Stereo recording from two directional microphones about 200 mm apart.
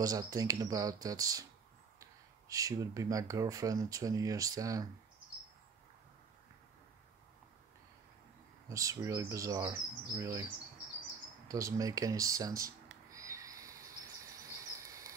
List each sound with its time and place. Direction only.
0.0 s chirp: 15° right (ahead or behind)
2.0 s speech: 15° right (ahead or behind)
8.6 s chirp: 15° right (ahead or behind)
11.4 s a sound: 15° right (ahead or behind)